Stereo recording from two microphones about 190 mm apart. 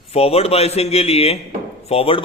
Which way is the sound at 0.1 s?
30° left (ahead or behind).